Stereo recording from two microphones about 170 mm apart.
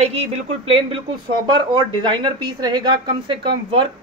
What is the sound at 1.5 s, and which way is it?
A woman's voice, 30° right (ahead or behind).